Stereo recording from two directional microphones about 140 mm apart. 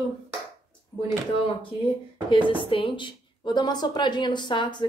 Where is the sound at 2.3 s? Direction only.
35° left (ahead or behind).